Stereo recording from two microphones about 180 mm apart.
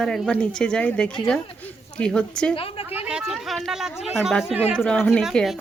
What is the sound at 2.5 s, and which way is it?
Speech, 30° left (ahead or behind).